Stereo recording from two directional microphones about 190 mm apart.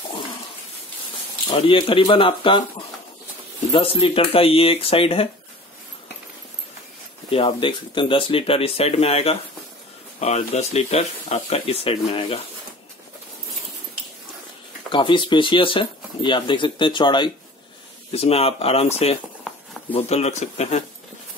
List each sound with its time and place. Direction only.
1.5 s speech: 30° left (ahead or behind)
3.7 s speech: 30° left (ahead or behind)
7.2 s speech: 30° left (ahead or behind)
14.9 s speech: 25° left (ahead or behind)
19.9 s speech: 30° left (ahead or behind)